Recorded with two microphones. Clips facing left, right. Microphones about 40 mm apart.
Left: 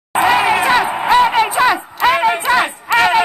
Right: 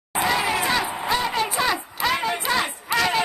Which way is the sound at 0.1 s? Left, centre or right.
Left.